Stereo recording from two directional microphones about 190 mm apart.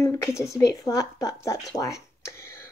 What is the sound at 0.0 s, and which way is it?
Speech, 15° left (ahead or behind).